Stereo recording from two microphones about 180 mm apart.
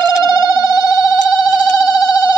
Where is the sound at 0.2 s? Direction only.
20° left (ahead or behind).